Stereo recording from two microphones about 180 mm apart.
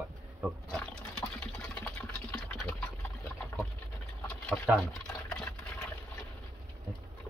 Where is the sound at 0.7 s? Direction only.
5° left (ahead or behind).